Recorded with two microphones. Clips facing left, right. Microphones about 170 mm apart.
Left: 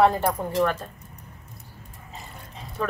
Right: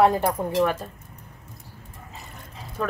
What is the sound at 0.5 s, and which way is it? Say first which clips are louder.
Speech: right 1 dB; centre (ahead or behind).